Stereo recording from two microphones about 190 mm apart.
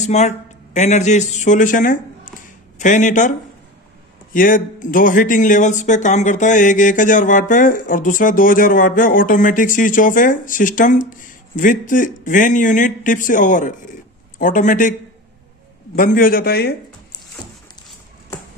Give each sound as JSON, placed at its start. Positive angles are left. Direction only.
{"t": 0.0, "sound": "a man's voice", "side_deg": 35}
{"t": 16.0, "sound": "speech", "side_deg": 45}